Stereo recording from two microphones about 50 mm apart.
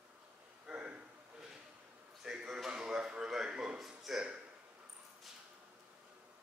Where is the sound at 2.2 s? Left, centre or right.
Centre.